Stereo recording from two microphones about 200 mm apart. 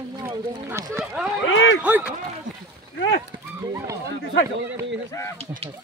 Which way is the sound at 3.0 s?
65° left (ahead or behind).